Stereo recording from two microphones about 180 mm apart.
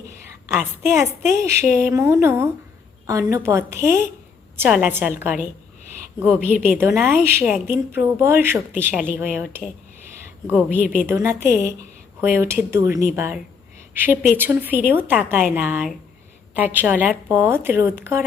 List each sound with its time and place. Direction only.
0.4 s speech: 10° right (ahead or behind)